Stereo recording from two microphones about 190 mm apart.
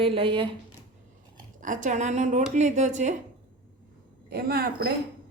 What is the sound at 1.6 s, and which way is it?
A woman's voice, 40° right (ahead or behind).